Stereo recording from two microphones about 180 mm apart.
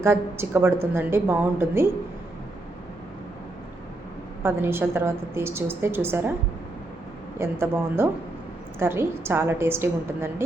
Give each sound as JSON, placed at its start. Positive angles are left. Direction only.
{"t": 0.0, "sound": "a woman's voice", "side_deg": -15}
{"t": 4.4, "sound": "a woman's voice", "side_deg": -15}
{"t": 7.3, "sound": "a woman's voice", "side_deg": -15}